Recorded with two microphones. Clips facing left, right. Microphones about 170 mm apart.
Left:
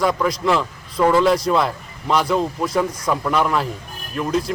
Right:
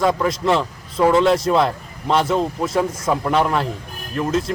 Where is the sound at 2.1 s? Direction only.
25° right (ahead or behind).